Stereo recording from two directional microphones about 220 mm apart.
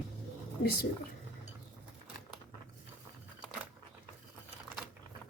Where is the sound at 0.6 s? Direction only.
45° left (ahead or behind).